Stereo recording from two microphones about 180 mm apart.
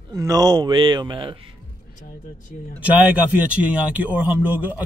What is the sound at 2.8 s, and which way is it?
Speech, 5° right (ahead or behind).